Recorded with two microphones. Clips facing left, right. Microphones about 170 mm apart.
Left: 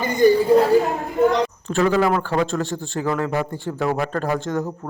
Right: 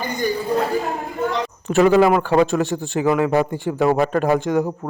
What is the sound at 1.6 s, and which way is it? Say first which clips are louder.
A man's voice: right 7 dB; 20° right (ahead or behind).